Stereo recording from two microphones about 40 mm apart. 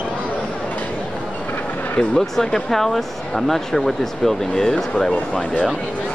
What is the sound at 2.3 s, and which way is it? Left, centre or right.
Speech, centre.